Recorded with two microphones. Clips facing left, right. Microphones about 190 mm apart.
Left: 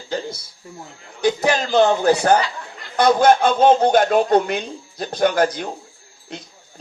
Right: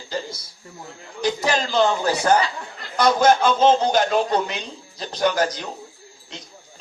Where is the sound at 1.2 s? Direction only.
55° left (ahead or behind).